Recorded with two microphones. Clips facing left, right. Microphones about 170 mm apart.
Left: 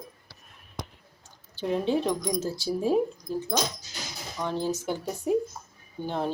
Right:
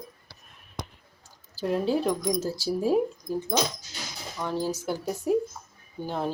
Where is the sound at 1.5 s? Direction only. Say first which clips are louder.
Right 1 dB; 5° right (ahead or behind).